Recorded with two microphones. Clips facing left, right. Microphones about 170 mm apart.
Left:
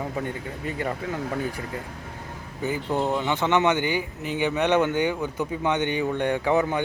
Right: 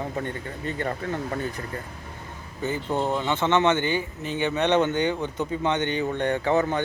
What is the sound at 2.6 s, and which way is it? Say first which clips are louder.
Speech: left 1 dB; 10° left (ahead or behind).